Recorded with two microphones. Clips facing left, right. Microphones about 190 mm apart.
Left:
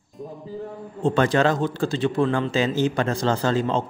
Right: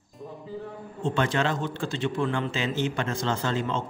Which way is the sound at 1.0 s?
40° left (ahead or behind).